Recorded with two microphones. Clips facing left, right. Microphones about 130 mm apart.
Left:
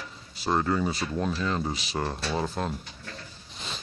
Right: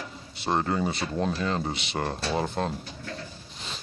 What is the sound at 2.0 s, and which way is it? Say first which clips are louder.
Speech: right 1 dB; 35° right (ahead or behind).